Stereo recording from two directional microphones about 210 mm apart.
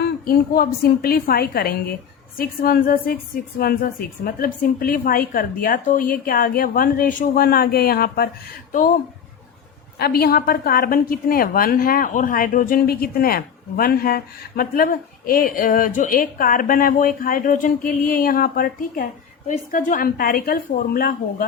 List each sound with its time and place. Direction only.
0.0 s a woman's voice: 45° left (ahead or behind)
10.0 s a woman's voice: 45° left (ahead or behind)